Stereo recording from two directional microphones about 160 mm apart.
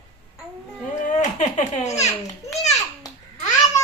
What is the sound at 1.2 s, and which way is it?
Speech, 45° left (ahead or behind).